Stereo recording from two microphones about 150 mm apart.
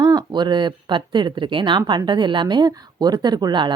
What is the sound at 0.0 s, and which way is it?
Speech, 25° right (ahead or behind).